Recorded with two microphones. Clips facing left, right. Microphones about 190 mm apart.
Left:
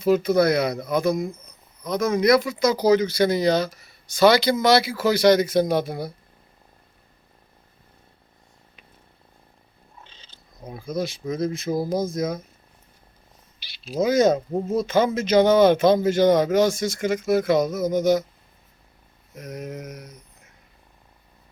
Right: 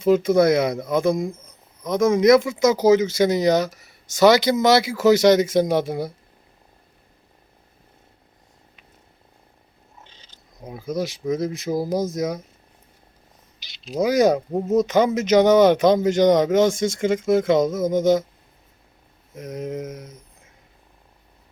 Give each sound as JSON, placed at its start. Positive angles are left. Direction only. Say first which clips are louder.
{"t": 0.0, "sound": "speech", "louder": "right 2 dB", "side_deg": -20}
{"t": 10.0, "sound": "purr", "louder": "even", "side_deg": -15}
{"t": 10.7, "sound": "speech", "louder": "right 1 dB", "side_deg": -15}
{"t": 14.0, "sound": "speech", "louder": "right 1 dB", "side_deg": -15}
{"t": 19.3, "sound": "speech", "louder": "right 4 dB", "side_deg": -25}